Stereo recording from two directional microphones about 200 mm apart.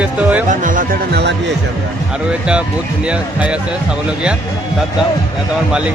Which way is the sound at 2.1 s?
5° right (ahead or behind).